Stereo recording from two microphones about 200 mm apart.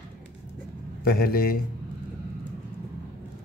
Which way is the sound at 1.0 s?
50° left (ahead or behind).